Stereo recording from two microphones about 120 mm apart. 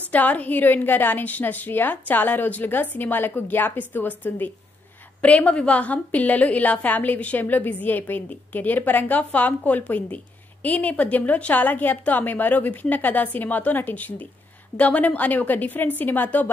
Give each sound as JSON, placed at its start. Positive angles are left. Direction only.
{"t": 0.1, "sound": "a woman's voice", "side_deg": 15}